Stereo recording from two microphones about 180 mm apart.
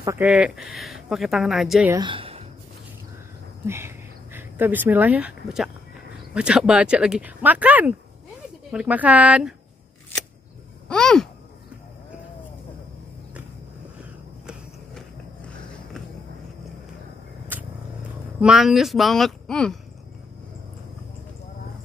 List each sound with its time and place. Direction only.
0.2 s speech: 5° right (ahead or behind)
2.0 s a sound: 30° right (ahead or behind)
3.6 s a sound: 15° right (ahead or behind)
6.3 s speech: 5° right (ahead or behind)
10.9 s speech: 5° left (ahead or behind)
17.5 s vehicle: 10° right (ahead or behind)
18.4 s speech: centre (ahead or behind)